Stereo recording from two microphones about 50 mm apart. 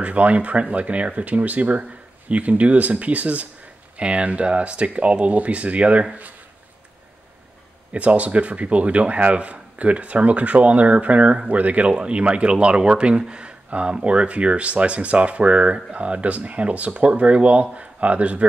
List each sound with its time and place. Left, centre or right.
0.0 s speech: right
7.9 s speech: right